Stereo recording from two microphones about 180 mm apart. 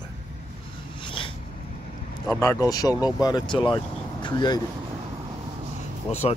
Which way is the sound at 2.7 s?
20° left (ahead or behind).